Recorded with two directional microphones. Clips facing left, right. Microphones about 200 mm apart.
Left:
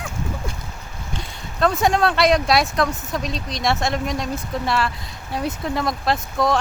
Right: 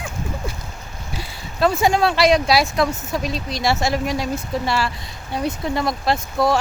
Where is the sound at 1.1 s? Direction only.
5° right (ahead or behind).